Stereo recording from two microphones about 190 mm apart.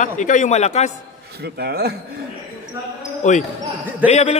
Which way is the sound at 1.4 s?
60° right (ahead or behind).